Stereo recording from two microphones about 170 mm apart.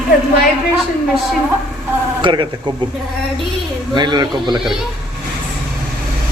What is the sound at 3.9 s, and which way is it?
Speech, 25° right (ahead or behind).